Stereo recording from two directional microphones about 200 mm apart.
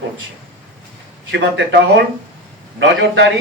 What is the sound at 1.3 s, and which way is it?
Speech, 60° right (ahead or behind).